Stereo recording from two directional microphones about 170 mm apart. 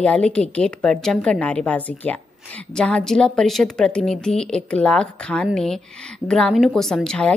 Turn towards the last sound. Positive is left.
turn(degrees=5)  # may be behind; listen again after turning